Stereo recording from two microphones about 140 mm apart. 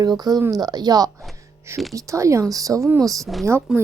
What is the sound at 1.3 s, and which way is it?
Music, 20° right (ahead or behind).